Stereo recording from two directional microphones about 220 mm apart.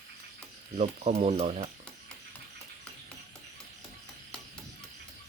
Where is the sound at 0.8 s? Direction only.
30° right (ahead or behind).